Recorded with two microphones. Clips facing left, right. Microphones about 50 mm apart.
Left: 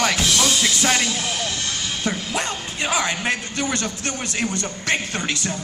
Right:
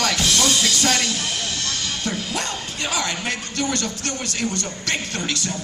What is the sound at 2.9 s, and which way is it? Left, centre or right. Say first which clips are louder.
Speech: left 3 dB; left.